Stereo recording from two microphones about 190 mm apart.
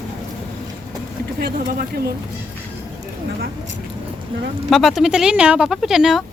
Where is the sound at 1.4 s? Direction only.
55° right (ahead or behind).